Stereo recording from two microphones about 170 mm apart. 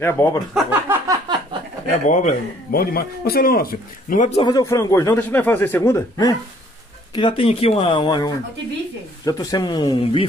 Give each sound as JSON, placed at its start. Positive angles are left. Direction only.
{"t": 0.0, "sound": "a man's voice", "side_deg": 15}
{"t": 0.6, "sound": "a sound", "side_deg": -10}
{"t": 1.0, "sound": "a sound", "side_deg": -20}
{"t": 2.0, "sound": "a man's voice", "side_deg": 45}
{"t": 4.4, "sound": "a man's voice", "side_deg": 25}
{"t": 7.2, "sound": "speech", "side_deg": 30}